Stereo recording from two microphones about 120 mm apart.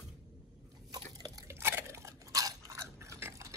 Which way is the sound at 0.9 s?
35° right (ahead or behind).